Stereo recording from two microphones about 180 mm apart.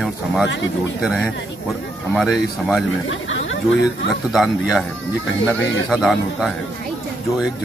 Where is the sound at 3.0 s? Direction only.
90° left.